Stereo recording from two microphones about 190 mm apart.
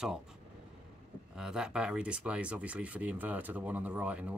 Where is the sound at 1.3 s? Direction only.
5° right (ahead or behind).